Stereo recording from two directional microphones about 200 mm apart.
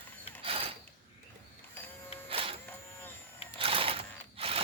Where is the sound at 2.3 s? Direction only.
25° right (ahead or behind).